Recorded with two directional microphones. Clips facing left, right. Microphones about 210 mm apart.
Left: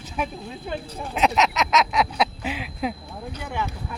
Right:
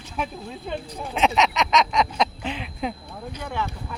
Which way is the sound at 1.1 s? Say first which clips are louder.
Even; centre (ahead or behind).